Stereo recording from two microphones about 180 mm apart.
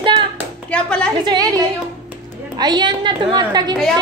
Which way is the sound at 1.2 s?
20° right (ahead or behind).